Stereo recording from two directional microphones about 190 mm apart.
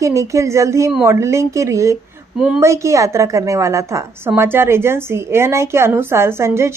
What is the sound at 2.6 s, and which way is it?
A woman's voice, 15° right (ahead or behind).